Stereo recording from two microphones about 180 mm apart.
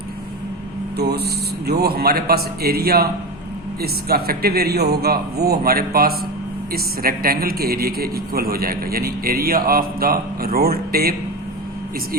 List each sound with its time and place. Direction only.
0.9 s a man's voice: 65° right (ahead or behind)